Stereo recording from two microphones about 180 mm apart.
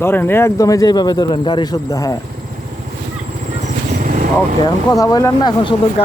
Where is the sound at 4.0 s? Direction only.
50° right (ahead or behind).